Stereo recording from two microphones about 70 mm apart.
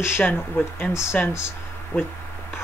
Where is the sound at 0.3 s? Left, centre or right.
Left.